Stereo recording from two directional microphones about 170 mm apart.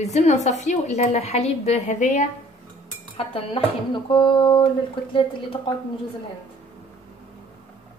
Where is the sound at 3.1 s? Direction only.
30° left (ahead or behind).